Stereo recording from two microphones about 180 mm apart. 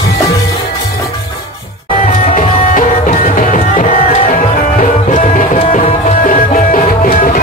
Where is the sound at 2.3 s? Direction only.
45° left (ahead or behind).